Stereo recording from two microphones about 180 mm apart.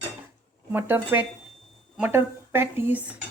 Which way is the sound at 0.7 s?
10° right (ahead or behind).